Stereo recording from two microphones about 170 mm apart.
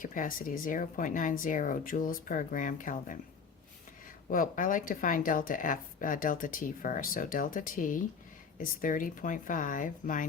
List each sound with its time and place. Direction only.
0.0 s speech: 50° left (ahead or behind)
4.3 s speech: 50° left (ahead or behind)